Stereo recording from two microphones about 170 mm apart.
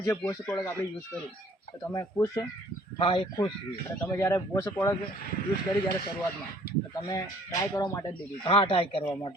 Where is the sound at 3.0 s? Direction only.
30° left (ahead or behind).